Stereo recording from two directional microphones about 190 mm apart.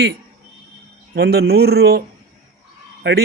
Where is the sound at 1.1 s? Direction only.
60° right (ahead or behind).